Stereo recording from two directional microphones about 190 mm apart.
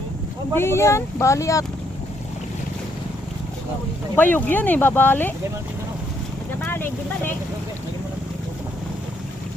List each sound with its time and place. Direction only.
0.5 s speech: 15° left (ahead or behind)
4.1 s speech: 10° left (ahead or behind)
6.6 s vehicle: 10° left (ahead or behind)